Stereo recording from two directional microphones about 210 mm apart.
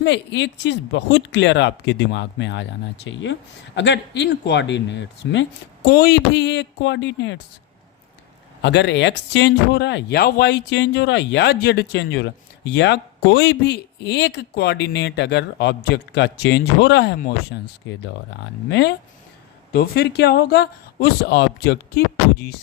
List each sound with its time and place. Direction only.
0.0 s speech: 60° left (ahead or behind)
8.6 s speech: 55° left (ahead or behind)
17.2 s speech: 45° left (ahead or behind)
18.7 s speech: 55° left (ahead or behind)